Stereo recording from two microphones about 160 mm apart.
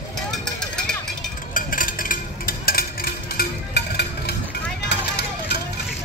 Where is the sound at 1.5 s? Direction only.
60° left (ahead or behind); by 4.3 s 90° left.